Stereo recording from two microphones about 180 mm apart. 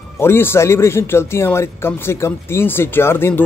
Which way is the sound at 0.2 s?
15° left (ahead or behind).